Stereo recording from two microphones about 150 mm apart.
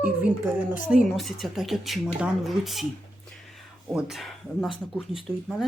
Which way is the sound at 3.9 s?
5° right (ahead or behind).